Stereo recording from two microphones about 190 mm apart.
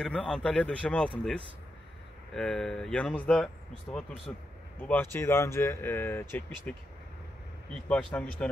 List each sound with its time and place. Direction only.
0.0 s speech: 5° left (ahead or behind)
2.3 s speech: 5° left (ahead or behind)
7.9 s speech: 5° left (ahead or behind)